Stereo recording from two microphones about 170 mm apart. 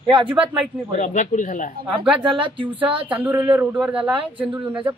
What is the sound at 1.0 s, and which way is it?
Speech, 50° left (ahead or behind).